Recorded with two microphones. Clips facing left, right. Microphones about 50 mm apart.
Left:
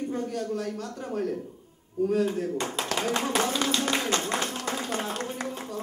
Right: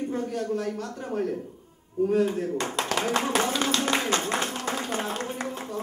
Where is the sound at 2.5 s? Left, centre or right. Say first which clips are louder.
Right 1 dB; centre.